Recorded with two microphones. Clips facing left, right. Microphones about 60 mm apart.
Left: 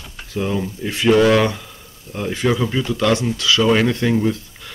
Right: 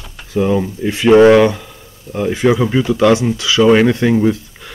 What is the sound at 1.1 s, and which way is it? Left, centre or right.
Speech, right.